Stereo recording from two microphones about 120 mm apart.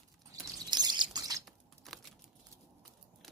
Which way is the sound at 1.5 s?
Centre (ahead or behind).